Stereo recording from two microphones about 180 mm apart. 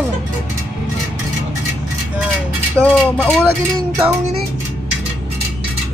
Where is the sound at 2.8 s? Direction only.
5° left (ahead or behind).